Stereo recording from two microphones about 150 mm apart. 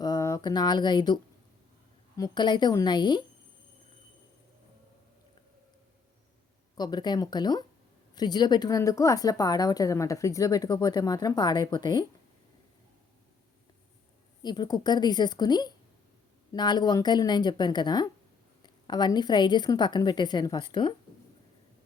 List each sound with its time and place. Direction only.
0.0 s a woman's voice: 25° left (ahead or behind)
6.7 s a woman's voice: 25° left (ahead or behind)
14.4 s a woman's voice: 30° left (ahead or behind)